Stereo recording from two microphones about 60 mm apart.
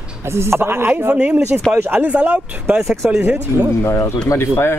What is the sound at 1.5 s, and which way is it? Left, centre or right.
Speech, centre.